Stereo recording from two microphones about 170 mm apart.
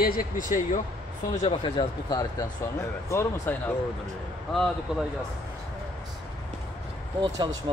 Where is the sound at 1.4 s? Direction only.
25° left (ahead or behind).